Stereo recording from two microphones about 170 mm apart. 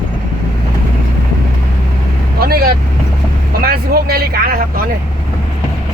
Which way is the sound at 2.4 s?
65° right (ahead or behind).